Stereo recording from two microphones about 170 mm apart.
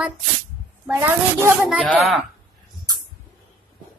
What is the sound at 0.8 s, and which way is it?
A woman's voice, 10° right (ahead or behind).